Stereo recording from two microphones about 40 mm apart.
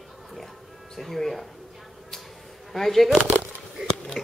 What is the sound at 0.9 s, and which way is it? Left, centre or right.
Speech, centre.